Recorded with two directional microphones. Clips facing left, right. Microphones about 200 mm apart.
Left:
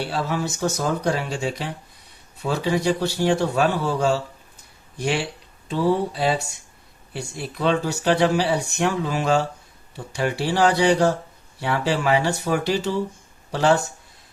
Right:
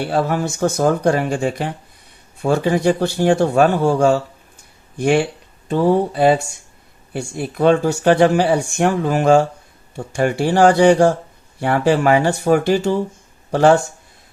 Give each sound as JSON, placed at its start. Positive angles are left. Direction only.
{"t": 0.0, "sound": "speech", "side_deg": -50}